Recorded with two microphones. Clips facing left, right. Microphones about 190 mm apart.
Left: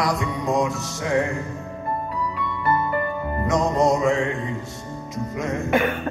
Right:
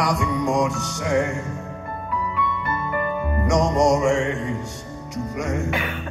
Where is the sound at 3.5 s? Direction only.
80° right.